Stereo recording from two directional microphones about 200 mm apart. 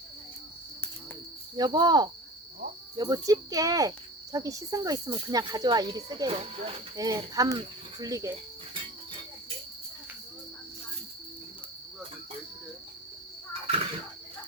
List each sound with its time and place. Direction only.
1.5 s speech: 20° right (ahead or behind)
7.0 s speech: 15° right (ahead or behind)